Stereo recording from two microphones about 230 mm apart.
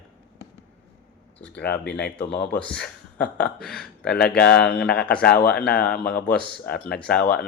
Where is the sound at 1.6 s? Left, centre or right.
Left.